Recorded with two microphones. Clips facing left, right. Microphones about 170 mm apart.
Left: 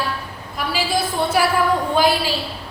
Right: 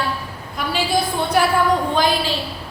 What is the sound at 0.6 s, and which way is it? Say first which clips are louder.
Speech: right 1 dB; centre (ahead or behind).